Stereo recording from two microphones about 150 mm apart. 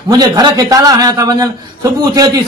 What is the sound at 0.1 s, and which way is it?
A man's voice, 30° right (ahead or behind).